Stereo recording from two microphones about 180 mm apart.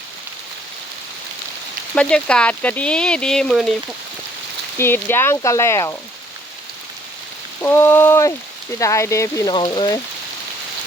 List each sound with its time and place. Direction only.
2.0 s speech: 5° left (ahead or behind)
4.8 s speech: 10° left (ahead or behind)
7.6 s speech: 10° left (ahead or behind)